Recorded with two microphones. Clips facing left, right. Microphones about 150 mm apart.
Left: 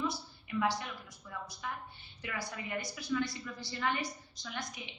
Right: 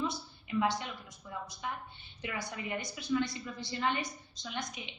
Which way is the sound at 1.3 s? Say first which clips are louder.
Right 2 dB; 20° right (ahead or behind).